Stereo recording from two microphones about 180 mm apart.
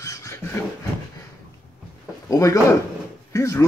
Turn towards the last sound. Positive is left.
turn(degrees=15)  # may be behind; listen again after turning